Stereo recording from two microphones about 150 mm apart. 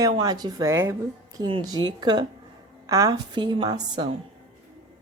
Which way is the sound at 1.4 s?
30° right (ahead or behind).